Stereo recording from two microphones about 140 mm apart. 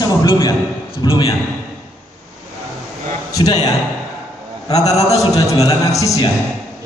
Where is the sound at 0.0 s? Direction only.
30° left (ahead or behind).